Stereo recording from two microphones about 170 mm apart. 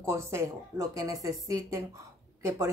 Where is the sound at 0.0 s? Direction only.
15° right (ahead or behind).